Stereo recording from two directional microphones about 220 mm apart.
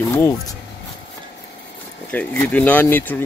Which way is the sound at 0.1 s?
15° left (ahead or behind).